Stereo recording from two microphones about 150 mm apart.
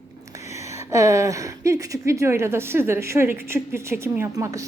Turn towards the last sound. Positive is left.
turn(degrees=-20)  # may be behind; listen again after turning